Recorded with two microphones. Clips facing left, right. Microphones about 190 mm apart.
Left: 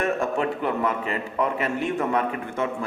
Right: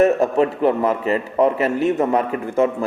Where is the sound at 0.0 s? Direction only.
40° right (ahead or behind).